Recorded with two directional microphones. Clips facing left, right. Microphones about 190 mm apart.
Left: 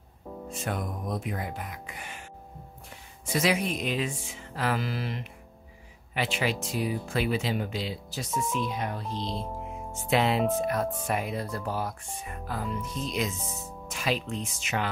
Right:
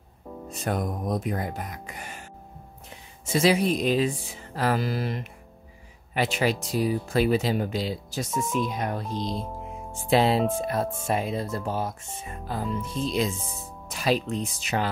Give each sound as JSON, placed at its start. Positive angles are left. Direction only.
{"t": 0.5, "sound": "speech", "side_deg": -40}
{"t": 3.3, "sound": "speech", "side_deg": -30}
{"t": 9.9, "sound": "speech", "side_deg": -35}